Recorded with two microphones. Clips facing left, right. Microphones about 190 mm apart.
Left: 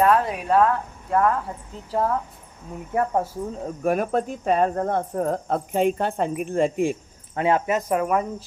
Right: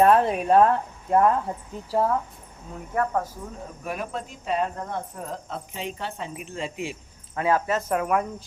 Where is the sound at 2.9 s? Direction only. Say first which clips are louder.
Left 3 dB; 25° left (ahead or behind).